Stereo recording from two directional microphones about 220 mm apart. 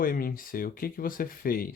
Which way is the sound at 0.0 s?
40° left (ahead or behind).